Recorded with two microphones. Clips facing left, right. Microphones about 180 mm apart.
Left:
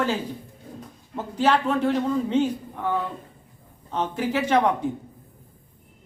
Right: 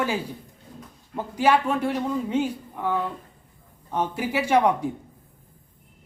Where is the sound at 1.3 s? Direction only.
10° right (ahead or behind).